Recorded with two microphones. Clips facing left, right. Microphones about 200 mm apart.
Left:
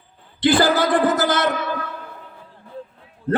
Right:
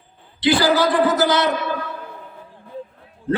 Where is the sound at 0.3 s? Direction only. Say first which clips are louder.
Even; 50° left (ahead or behind).